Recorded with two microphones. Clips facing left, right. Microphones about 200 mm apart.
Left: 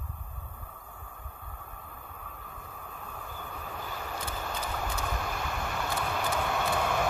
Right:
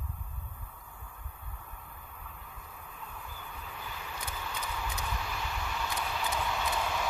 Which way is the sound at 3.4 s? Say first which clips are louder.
Left 6 dB; 50° left (ahead or behind).